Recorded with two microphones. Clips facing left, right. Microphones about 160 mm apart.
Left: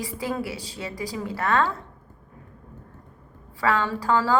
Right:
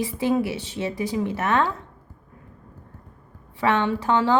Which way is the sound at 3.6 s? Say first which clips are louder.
Right 2 dB; 20° right (ahead or behind).